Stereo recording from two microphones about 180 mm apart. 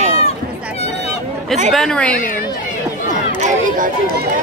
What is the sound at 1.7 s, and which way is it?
Speech, 5° left (ahead or behind).